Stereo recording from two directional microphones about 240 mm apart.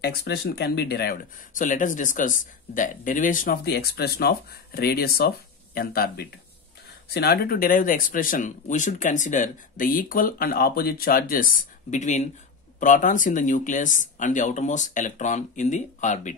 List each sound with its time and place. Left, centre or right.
0.0 s speech: left